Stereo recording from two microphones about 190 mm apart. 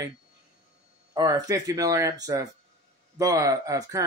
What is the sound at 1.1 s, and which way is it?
Speech, 20° right (ahead or behind).